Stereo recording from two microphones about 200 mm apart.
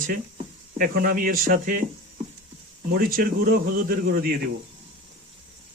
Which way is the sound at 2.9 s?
50° right (ahead or behind).